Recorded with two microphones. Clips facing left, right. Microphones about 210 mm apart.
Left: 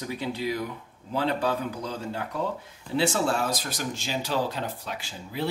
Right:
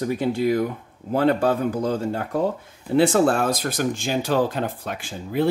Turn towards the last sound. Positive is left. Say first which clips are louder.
# right 9 dB
turn(degrees=-50)  # may be behind; listen again after turning